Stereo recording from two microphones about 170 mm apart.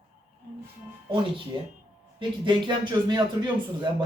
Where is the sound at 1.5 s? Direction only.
30° right (ahead or behind).